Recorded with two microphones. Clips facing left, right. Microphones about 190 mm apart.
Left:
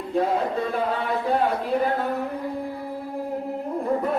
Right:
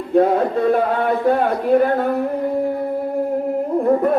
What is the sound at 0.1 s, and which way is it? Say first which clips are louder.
Speech: right 8 dB; 55° right (ahead or behind).